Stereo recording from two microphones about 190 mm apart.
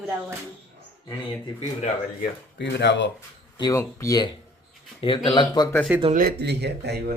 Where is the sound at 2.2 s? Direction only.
60° left (ahead or behind).